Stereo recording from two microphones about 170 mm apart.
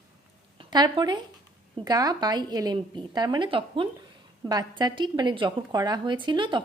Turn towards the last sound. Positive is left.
turn(degrees=-30)  # may be behind; listen again after turning